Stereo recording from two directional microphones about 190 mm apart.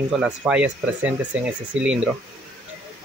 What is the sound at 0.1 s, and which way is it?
Speech, 5° right (ahead or behind).